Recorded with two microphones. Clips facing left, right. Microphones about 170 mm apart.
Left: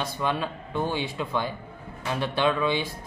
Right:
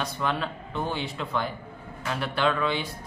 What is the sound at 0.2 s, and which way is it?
Speech, 15° left (ahead or behind).